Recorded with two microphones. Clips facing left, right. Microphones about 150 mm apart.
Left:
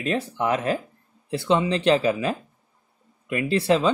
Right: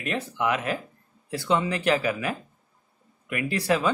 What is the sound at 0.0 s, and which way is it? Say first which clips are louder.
Speech: left 3 dB; 35° left (ahead or behind).